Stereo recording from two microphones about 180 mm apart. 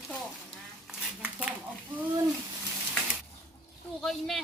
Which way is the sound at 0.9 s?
5° right (ahead or behind).